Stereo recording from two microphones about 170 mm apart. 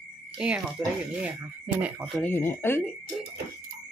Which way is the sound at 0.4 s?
5° right (ahead or behind).